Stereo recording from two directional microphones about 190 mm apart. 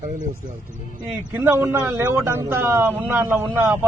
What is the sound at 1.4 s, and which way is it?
Speech, 10° right (ahead or behind).